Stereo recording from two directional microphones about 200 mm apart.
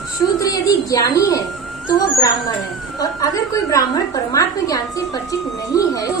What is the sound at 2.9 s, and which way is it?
A woman's voice, 15° left (ahead or behind).